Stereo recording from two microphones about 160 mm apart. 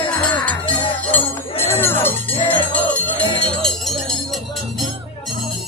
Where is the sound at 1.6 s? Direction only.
15° left (ahead or behind).